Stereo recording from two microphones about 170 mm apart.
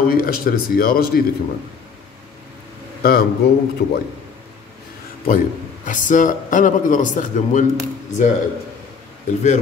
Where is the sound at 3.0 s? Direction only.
65° left (ahead or behind).